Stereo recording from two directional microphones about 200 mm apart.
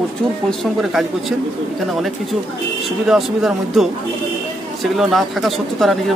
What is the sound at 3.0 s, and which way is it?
Speech, centre (ahead or behind).